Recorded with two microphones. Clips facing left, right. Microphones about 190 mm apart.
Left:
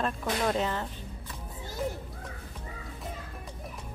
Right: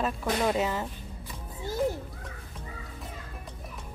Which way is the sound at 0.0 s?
5° right (ahead or behind).